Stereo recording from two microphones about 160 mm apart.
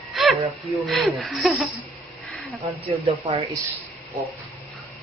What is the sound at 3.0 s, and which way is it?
Speech, 35° right (ahead or behind).